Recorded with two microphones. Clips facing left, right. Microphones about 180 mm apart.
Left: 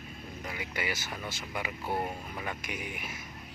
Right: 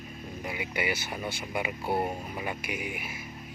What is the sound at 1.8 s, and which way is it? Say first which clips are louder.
Speech: right 4 dB; 30° right (ahead or behind).